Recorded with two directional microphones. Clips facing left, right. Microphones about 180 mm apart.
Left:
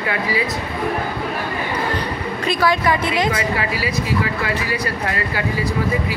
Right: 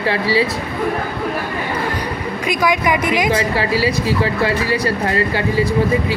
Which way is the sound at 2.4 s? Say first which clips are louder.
Right 1 dB; 15° right (ahead or behind).